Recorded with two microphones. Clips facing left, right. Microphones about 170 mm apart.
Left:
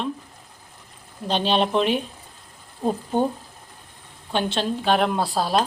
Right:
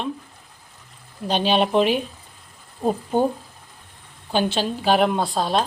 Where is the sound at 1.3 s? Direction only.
5° right (ahead or behind).